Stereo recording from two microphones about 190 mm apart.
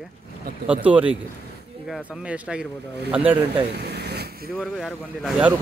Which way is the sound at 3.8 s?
60° right (ahead or behind).